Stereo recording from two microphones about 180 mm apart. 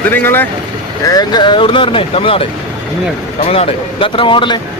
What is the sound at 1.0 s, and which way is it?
Speech, 20° left (ahead or behind).